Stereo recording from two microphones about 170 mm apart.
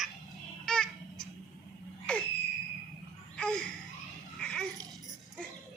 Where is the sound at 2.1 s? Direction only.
5° left (ahead or behind).